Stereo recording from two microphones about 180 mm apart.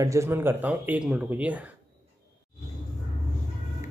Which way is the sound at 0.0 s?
15° right (ahead or behind).